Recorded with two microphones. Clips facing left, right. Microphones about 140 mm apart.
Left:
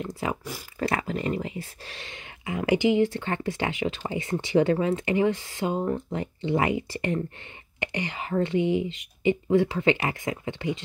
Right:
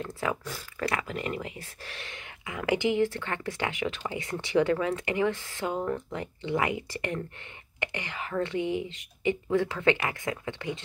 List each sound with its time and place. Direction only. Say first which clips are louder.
0.0 s speech: left 1 dB; 20° left (ahead or behind)